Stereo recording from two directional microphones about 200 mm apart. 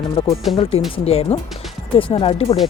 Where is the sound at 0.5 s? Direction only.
30° left (ahead or behind).